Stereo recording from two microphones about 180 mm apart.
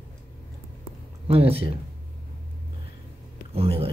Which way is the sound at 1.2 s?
35° right (ahead or behind).